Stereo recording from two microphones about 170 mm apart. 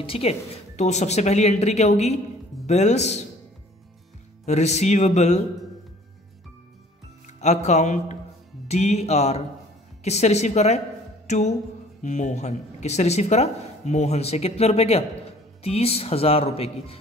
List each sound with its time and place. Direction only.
0.0 s speech: 35° left (ahead or behind)
4.5 s speech: 40° left (ahead or behind)
7.3 s speech: 40° left (ahead or behind)
11.2 s music: 45° left (ahead or behind)
12.0 s speech: 45° left (ahead or behind)